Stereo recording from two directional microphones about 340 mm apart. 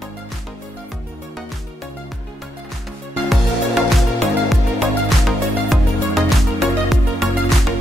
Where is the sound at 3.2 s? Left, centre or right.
Centre.